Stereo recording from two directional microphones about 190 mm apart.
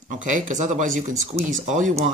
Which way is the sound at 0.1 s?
40° right (ahead or behind).